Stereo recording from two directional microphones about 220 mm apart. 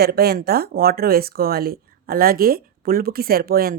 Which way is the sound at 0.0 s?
45° right (ahead or behind).